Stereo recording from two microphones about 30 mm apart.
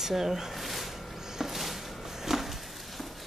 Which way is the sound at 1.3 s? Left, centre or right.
Centre.